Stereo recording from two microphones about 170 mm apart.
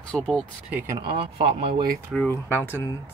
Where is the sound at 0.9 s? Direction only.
30° right (ahead or behind).